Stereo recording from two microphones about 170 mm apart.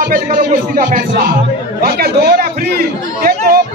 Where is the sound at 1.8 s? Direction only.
65° right (ahead or behind).